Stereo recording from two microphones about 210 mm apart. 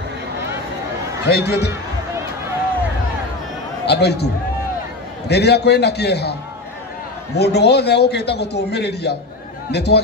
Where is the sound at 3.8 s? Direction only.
50° left (ahead or behind).